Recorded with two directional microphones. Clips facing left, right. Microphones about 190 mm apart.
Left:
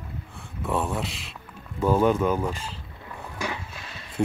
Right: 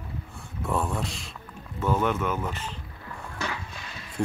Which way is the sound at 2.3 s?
10° left (ahead or behind).